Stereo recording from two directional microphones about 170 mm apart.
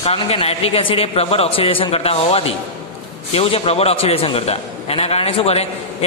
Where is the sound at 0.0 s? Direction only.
35° left (ahead or behind).